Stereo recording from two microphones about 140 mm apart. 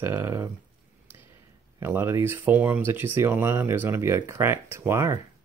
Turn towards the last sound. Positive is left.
turn(degrees=-20)  # may be behind; listen again after turning